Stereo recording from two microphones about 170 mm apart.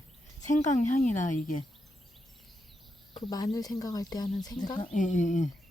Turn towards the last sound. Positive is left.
turn(degrees=45)  # may be behind; listen again after turning